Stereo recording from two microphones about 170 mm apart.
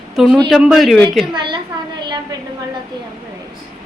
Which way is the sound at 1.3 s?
25° right (ahead or behind).